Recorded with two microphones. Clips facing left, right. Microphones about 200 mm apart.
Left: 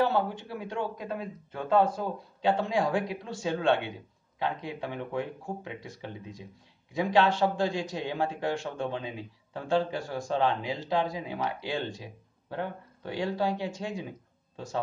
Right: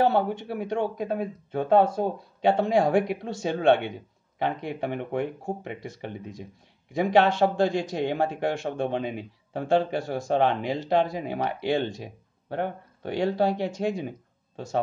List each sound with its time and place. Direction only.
0.0 s speech: 55° right (ahead or behind)